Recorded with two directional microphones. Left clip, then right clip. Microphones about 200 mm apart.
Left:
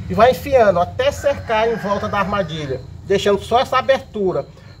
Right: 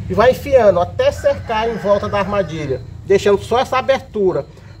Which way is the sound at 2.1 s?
25° right (ahead or behind).